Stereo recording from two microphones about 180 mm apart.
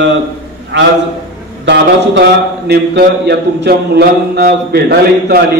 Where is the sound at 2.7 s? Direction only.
65° right (ahead or behind).